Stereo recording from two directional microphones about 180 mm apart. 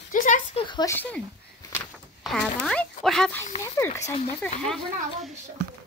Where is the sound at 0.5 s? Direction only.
25° left (ahead or behind).